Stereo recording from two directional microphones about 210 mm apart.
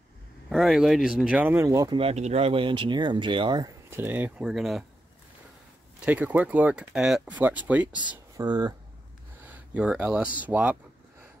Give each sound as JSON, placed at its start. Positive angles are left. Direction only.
{"t": 0.5, "sound": "speech", "side_deg": 0}
{"t": 2.0, "sound": "speech", "side_deg": -30}
{"t": 5.9, "sound": "speech", "side_deg": -5}
{"t": 8.4, "sound": "speech", "side_deg": -20}
{"t": 9.4, "sound": "speech", "side_deg": -5}